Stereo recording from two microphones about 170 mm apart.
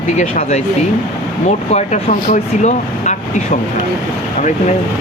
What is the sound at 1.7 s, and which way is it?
Speech, 45° left (ahead or behind).